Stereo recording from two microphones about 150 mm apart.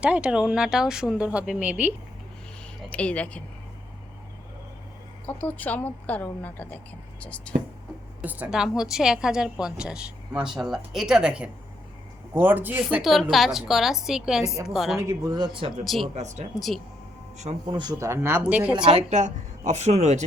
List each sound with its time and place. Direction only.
0.0 s a woman's voice: 10° right (ahead or behind)
2.9 s a woman's voice: 10° left (ahead or behind)
5.2 s a woman's voice: 10° left (ahead or behind)
8.2 s a woman's voice: 10° right (ahead or behind)
13.0 s a woman's voice: centre (ahead or behind)
14.9 s speech: 20° right (ahead or behind)
15.8 s a woman's voice: centre (ahead or behind)
16.1 s a man's voice: 50° right (ahead or behind)
16.6 s a woman's voice: centre (ahead or behind)
17.3 s speech: 45° right (ahead or behind)
17.7 s speech: 30° right (ahead or behind); by 18.9 s 10° right (ahead or behind)
19.1 s a man's voice: 50° right (ahead or behind)